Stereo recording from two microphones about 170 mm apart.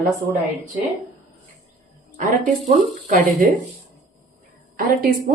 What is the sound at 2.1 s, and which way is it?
A woman's voice, 50° right (ahead or behind).